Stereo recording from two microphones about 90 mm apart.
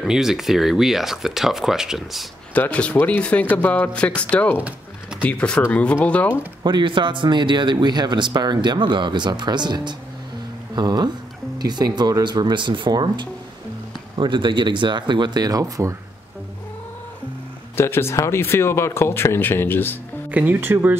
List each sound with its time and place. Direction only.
0.0 s speech: 5° right (ahead or behind)
2.5 s speech: 15° left (ahead or behind)
4.6 s a sound: 15° right (ahead or behind)
5.2 s speech: 15° left (ahead or behind)
6.6 s speech: 60° right (ahead or behind); by 16.0 s 35° right (ahead or behind)
17.7 s speech: 25° left (ahead or behind)
20.2 s speech: 15° right (ahead or behind)